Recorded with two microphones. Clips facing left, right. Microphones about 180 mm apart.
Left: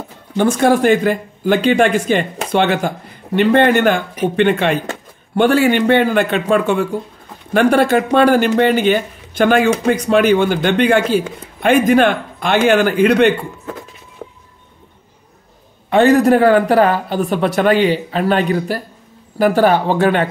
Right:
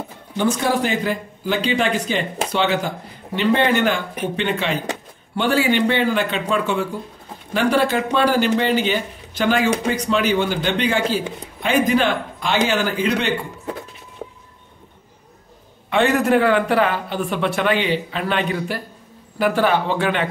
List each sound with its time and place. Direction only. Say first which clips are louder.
0.4 s a man's voice: left 6 dB; 55° left (ahead or behind)
15.9 s speech: left 6 dB; 40° left (ahead or behind)